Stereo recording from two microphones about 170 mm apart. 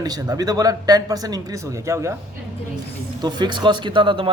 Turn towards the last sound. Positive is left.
turn(degrees=-30)  # may be behind; listen again after turning